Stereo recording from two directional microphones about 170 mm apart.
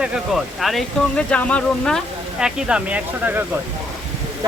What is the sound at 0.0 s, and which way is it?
Speech, 5° right (ahead or behind).